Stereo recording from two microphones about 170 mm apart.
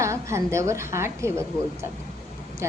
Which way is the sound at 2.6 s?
15° right (ahead or behind).